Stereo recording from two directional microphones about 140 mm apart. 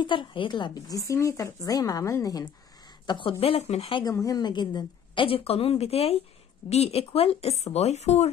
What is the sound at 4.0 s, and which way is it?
A woman's voice, 25° left (ahead or behind).